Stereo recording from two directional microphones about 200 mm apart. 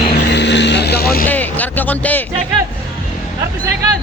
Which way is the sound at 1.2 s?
10° left (ahead or behind).